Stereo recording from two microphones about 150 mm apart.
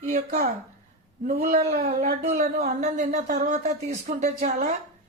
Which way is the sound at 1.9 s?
55° right (ahead or behind).